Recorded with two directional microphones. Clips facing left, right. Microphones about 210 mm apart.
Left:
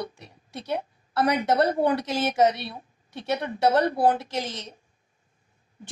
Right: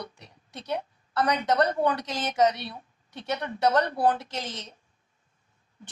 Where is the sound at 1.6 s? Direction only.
10° left (ahead or behind).